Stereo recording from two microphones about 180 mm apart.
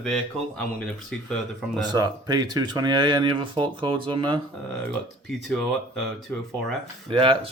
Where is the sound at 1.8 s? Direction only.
20° right (ahead or behind).